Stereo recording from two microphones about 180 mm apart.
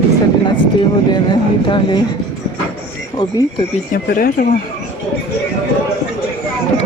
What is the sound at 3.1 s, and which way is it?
Speech, 25° left (ahead or behind).